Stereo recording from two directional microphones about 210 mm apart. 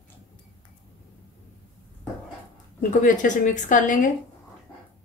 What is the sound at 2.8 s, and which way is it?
A woman's voice, 40° left (ahead or behind).